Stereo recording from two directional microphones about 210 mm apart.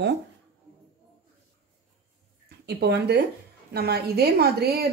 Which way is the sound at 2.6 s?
50° right (ahead or behind).